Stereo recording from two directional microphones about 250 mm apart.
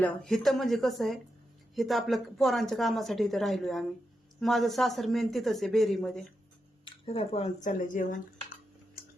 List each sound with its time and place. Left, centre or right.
0.0 s speech: centre
6.8 s speech: left